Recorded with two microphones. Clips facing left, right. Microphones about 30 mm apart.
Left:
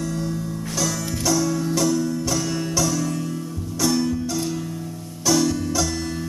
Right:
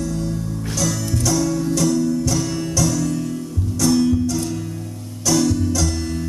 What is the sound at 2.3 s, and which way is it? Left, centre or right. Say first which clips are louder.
Music: right 1 dB; centre.